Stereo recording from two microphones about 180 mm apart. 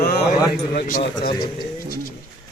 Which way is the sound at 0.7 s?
50° left (ahead or behind).